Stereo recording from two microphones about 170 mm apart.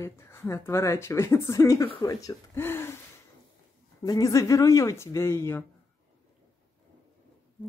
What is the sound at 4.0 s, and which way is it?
A woman's voice, 20° left (ahead or behind).